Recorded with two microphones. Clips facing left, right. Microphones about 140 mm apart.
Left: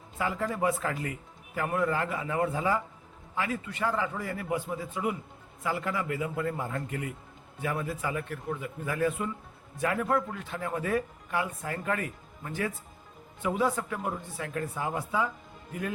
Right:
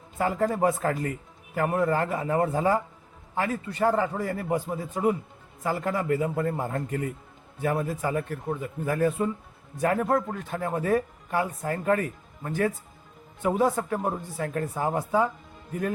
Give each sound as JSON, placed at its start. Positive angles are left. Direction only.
{"t": 0.2, "sound": "speech", "side_deg": -45}